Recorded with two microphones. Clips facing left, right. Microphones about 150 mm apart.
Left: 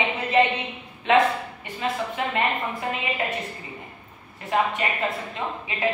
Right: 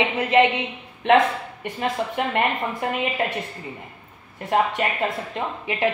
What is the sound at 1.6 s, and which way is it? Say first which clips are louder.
A woman's voice: right 5 dB; 55° right (ahead or behind).